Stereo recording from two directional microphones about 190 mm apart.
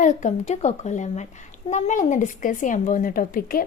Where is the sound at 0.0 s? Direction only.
40° left (ahead or behind).